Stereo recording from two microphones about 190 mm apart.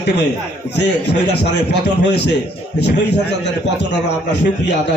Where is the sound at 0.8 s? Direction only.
65° left (ahead or behind).